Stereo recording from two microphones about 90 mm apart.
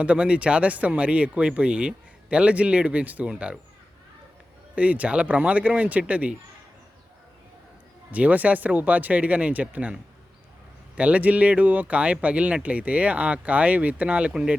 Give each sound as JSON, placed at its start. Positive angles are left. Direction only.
{"t": 0.0, "sound": "speech", "side_deg": -15}
{"t": 4.7, "sound": "speech", "side_deg": -15}
{"t": 8.1, "sound": "speech", "side_deg": -15}